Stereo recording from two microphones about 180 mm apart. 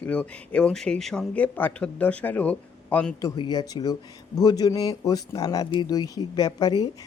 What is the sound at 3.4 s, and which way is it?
Speech, 25° left (ahead or behind).